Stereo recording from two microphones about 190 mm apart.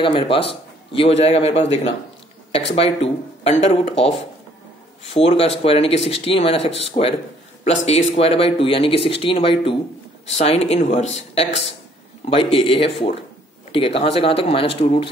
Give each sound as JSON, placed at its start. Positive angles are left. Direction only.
{"t": 0.0, "sound": "speech", "side_deg": 30}
{"t": 2.7, "sound": "speech", "side_deg": 30}